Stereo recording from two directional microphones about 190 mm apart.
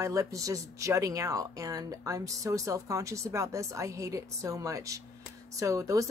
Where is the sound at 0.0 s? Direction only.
15° right (ahead or behind).